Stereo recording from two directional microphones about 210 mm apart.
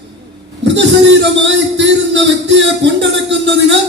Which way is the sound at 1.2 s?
55° right (ahead or behind).